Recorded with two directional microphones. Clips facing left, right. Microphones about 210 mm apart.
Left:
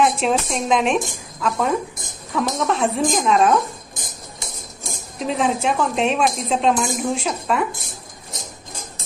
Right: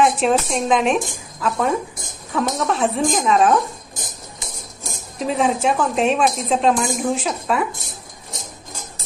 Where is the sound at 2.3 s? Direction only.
Centre (ahead or behind).